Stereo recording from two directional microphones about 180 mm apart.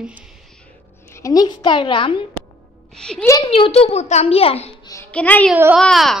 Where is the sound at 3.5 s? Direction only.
30° left (ahead or behind).